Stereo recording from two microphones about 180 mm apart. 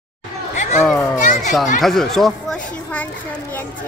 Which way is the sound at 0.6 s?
40° left (ahead or behind).